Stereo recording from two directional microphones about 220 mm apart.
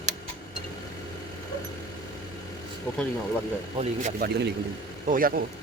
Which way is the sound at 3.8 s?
35° right (ahead or behind).